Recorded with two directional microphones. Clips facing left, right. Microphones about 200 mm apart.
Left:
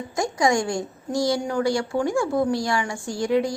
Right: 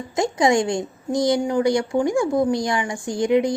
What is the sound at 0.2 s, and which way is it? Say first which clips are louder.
A woman's voice: right 3 dB; 20° right (ahead or behind).